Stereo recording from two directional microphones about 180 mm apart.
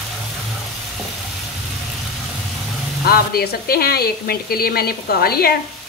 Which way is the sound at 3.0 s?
60° left (ahead or behind).